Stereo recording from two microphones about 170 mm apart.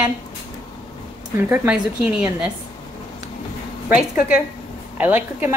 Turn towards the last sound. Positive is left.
turn(degrees=-10)  # may be behind; listen again after turning